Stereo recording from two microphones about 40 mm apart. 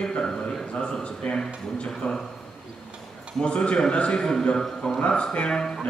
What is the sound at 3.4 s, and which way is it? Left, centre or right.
Speech, left.